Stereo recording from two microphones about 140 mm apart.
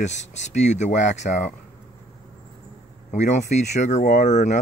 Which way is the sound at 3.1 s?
60° left (ahead or behind).